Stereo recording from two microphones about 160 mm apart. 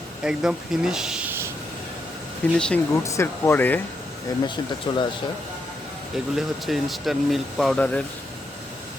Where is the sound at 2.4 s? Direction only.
10° left (ahead or behind).